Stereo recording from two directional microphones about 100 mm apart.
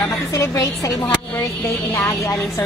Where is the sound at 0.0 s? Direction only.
35° left (ahead or behind).